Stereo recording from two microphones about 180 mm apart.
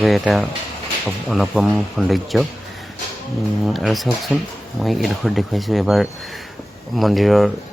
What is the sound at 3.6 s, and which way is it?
Speech, centre (ahead or behind).